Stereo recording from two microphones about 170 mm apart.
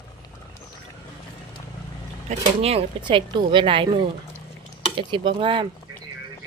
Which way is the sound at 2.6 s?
35° right (ahead or behind).